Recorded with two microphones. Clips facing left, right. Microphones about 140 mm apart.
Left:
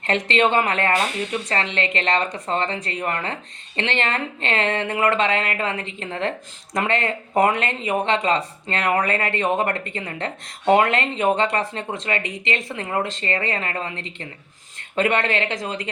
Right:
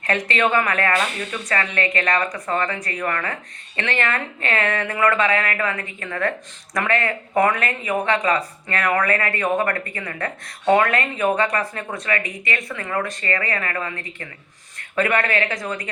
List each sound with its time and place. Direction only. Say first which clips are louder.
0.0 s speech: left 1 dB; 25° left (ahead or behind)